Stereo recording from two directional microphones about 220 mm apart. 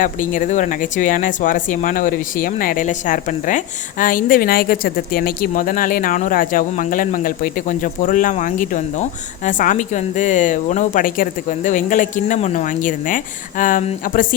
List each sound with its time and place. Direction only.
0.0 s speech: 35° left (ahead or behind)